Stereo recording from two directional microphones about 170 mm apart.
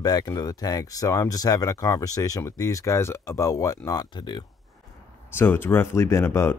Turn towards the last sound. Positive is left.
turn(degrees=15)  # may be behind; listen again after turning